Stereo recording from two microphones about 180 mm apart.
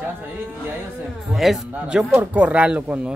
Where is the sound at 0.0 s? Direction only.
10° right (ahead or behind).